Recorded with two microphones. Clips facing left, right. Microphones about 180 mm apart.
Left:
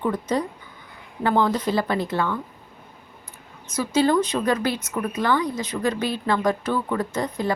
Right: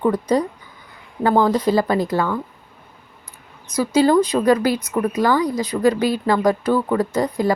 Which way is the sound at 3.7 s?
35° right (ahead or behind).